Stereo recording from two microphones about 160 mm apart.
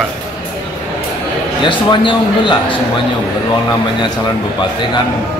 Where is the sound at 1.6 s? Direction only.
30° left (ahead or behind).